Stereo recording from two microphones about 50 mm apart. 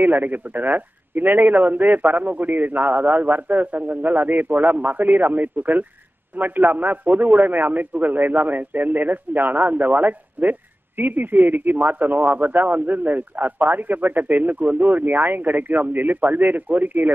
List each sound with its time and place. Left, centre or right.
0.0 s speech: right